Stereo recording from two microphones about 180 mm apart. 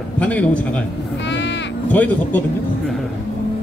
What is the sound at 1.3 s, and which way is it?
Crow, 80° left.